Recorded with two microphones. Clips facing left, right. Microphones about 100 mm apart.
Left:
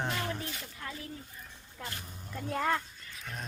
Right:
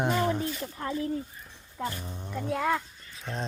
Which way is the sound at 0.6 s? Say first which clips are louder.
Right 11 dB; 35° right (ahead or behind).